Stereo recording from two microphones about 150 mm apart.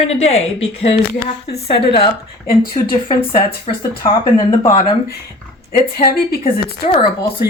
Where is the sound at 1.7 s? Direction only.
35° left (ahead or behind).